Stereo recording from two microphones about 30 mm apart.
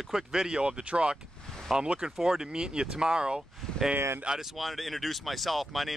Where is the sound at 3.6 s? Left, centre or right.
Centre.